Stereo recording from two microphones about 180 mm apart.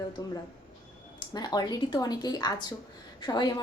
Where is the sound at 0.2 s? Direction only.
20° left (ahead or behind).